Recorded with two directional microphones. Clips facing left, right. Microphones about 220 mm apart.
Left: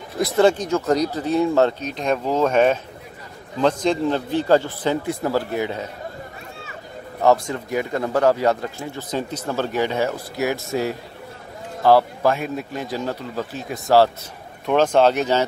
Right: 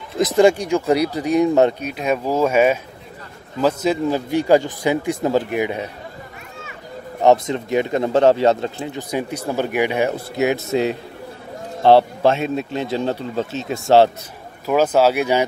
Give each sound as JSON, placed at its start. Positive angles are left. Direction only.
{"t": 0.2, "sound": "speech", "side_deg": -10}
{"t": 7.2, "sound": "speech", "side_deg": -20}
{"t": 14.7, "sound": "speech", "side_deg": -5}